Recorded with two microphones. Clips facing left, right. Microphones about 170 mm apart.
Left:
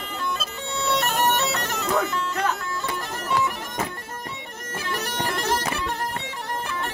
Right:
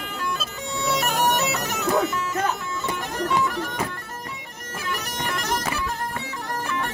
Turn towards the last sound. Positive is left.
turn(degrees=30)  # may be behind; listen again after turning